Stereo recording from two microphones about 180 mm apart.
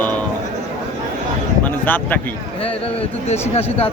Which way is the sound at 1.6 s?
10° left (ahead or behind).